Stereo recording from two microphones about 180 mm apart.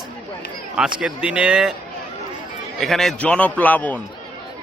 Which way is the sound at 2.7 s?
Centre (ahead or behind).